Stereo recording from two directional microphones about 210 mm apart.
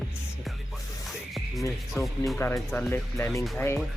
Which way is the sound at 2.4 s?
10° left (ahead or behind).